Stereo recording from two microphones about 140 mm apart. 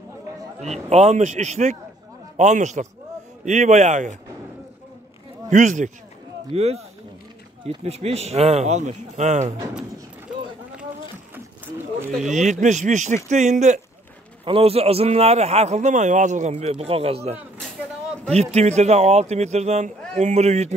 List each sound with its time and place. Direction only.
0.6 s speech: 50° right (ahead or behind)
5.5 s speech: 60° right (ahead or behind)
6.5 s a man's voice: 50° right (ahead or behind)
12.3 s speech: 60° right (ahead or behind)
14.4 s a man's voice: 45° right (ahead or behind)